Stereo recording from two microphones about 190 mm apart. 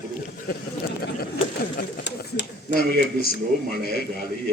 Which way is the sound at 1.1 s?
55° left (ahead or behind).